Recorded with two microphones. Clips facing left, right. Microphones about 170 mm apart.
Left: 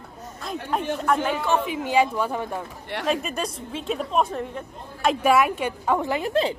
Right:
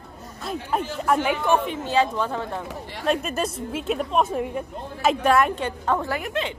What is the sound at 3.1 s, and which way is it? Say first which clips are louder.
A woman's voice: right 3 dB; centre (ahead or behind).